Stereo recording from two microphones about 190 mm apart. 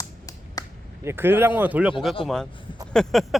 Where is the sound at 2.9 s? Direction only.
Centre (ahead or behind).